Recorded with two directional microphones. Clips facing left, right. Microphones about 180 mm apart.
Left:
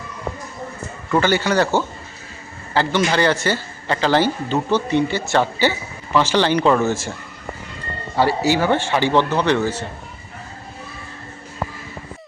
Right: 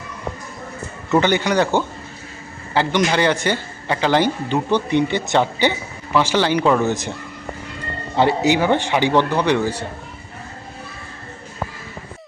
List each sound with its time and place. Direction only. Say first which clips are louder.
1.2 s a man's voice: left 2 dB; 15° right (ahead or behind)
8.1 s a man's voice: right 1 dB; 20° right (ahead or behind)